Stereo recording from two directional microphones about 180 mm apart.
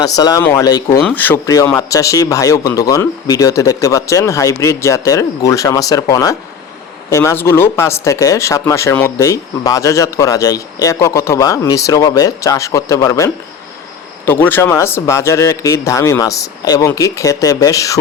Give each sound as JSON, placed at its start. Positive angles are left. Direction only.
{"t": 0.0, "sound": "speech", "side_deg": 20}